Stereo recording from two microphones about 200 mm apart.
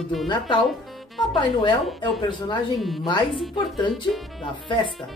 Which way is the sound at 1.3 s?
25° left (ahead or behind).